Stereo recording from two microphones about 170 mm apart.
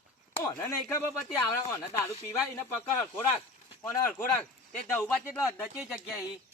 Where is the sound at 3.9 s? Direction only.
15° left (ahead or behind).